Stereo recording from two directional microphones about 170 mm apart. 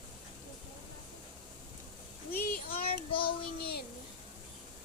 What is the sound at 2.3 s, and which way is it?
Child singing, 65° left (ahead or behind).